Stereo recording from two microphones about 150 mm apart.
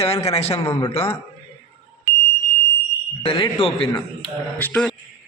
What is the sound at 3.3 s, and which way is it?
Speech, 35° left (ahead or behind).